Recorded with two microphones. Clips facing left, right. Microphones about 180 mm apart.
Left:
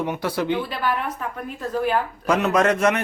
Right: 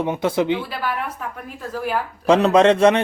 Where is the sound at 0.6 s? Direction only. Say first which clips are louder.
Left 1 dB; 5° right (ahead or behind).